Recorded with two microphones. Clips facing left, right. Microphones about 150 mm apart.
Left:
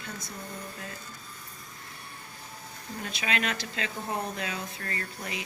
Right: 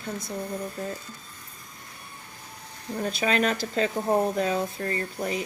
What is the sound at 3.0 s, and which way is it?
Speech, 40° right (ahead or behind).